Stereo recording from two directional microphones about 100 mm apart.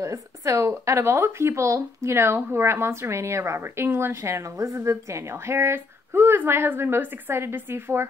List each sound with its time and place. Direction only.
0.0 s speech: 30° right (ahead or behind)